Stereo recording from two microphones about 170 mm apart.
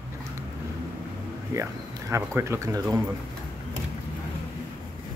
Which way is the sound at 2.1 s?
15° right (ahead or behind).